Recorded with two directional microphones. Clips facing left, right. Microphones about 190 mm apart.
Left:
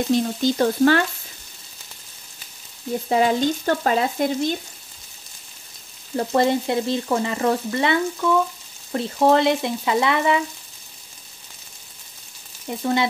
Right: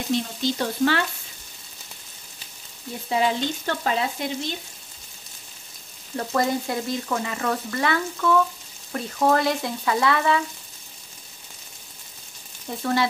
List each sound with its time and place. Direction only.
0.4 s frying: 45° left (ahead or behind)
3.1 s frying: 45° left (ahead or behind)
6.1 s frying: 30° left (ahead or behind)
12.6 s frying: 20° left (ahead or behind)